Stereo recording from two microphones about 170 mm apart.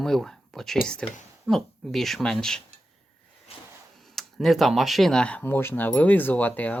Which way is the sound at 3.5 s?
35° left (ahead or behind).